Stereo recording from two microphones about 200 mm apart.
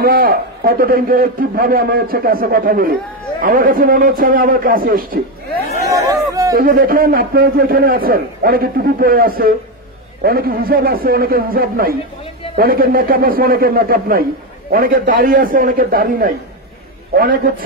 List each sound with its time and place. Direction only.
0.0 s a man's voice: 45° right (ahead or behind)
5.9 s chatter: 15° right (ahead or behind)
6.5 s a man's voice: 45° right (ahead or behind)